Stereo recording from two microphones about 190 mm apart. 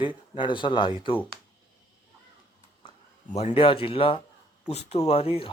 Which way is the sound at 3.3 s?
30° left (ahead or behind).